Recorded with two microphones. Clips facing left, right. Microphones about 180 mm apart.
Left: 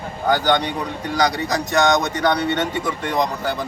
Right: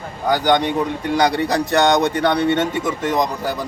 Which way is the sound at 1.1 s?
30° right (ahead or behind).